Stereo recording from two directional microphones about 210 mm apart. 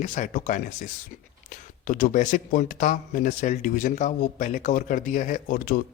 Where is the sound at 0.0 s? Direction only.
35° left (ahead or behind).